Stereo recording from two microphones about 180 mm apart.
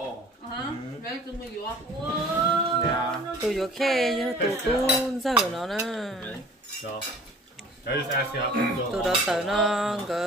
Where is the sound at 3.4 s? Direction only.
Centre (ahead or behind).